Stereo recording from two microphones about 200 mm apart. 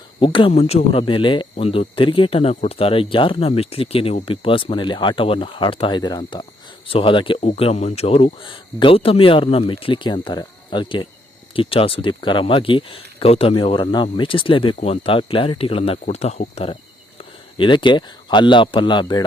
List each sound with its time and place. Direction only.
0.2 s speech: 25° left (ahead or behind)